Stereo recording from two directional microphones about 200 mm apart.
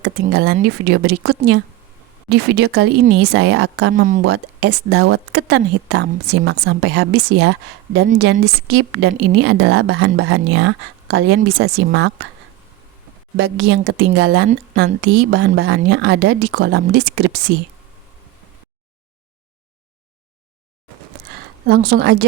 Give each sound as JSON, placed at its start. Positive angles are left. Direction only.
{"t": 0.0, "sound": "speech", "side_deg": -55}
{"t": 4.3, "sound": "speech", "side_deg": -55}
{"t": 13.3, "sound": "speech", "side_deg": -60}
{"t": 15.3, "sound": "speech", "side_deg": -70}
{"t": 21.7, "sound": "speech", "side_deg": -50}